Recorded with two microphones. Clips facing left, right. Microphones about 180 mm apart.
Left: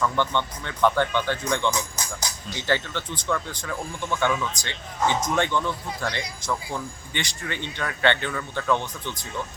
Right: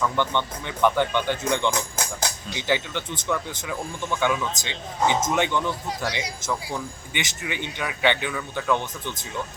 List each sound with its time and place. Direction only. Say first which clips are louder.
0.2 s speech: even; 15° right (ahead or behind)
1.7 s music: right 2 dB; 65° right (ahead or behind)
2.5 s speech: even; 15° right (ahead or behind)